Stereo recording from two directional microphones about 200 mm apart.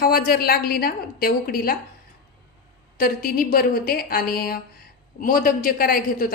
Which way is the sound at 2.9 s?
45° left (ahead or behind).